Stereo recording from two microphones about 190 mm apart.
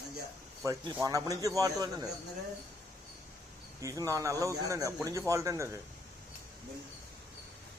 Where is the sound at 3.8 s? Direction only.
15° right (ahead or behind).